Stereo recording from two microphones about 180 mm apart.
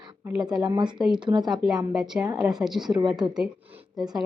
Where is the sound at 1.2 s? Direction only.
25° right (ahead or behind).